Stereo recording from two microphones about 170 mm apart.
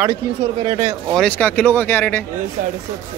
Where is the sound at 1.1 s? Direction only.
5° left (ahead or behind).